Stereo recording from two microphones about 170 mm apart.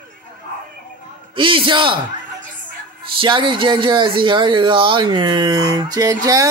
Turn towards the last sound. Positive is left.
turn(degrees=-20)  # may be behind; listen again after turning